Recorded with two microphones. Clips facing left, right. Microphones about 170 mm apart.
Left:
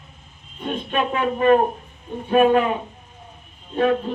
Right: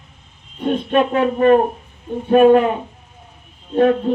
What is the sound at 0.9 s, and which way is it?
Music, 45° right (ahead or behind).